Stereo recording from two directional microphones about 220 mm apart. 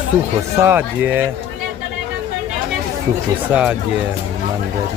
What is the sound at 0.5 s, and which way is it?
Speech, 10° right (ahead or behind).